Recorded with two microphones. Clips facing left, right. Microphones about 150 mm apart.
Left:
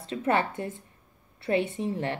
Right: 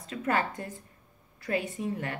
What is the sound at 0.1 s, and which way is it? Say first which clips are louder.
A woman's voice: left 3 dB; 25° left (ahead or behind).